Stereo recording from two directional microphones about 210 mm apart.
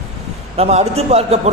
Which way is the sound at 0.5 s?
30° right (ahead or behind).